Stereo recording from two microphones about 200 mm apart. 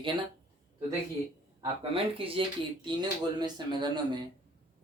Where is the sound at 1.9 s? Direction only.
25° right (ahead or behind).